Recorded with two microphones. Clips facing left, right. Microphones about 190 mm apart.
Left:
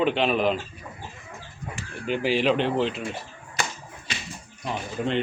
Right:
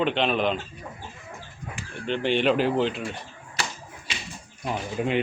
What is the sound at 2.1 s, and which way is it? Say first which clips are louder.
A man's voice: even; 5° left (ahead or behind).